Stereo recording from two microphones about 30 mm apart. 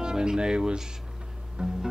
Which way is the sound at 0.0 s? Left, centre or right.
Right.